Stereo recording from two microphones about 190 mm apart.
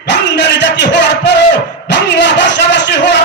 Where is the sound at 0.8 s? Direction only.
65° left (ahead or behind).